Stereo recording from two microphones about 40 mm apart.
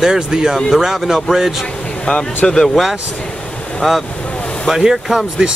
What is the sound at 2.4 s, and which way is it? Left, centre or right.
Speech, centre.